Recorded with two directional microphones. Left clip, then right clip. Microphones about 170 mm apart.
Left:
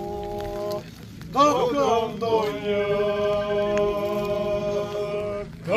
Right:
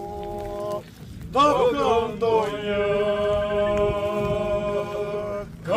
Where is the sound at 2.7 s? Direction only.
20° right (ahead or behind).